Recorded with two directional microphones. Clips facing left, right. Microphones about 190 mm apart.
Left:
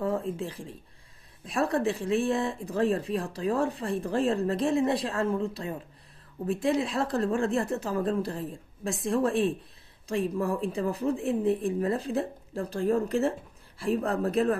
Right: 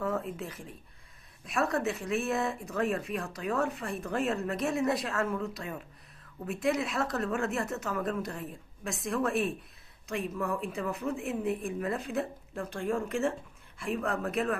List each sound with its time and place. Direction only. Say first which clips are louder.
0.0 s speech: left 4 dB; 30° left (ahead or behind)